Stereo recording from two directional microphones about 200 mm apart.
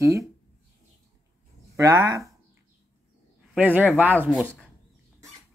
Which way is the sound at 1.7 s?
15° right (ahead or behind).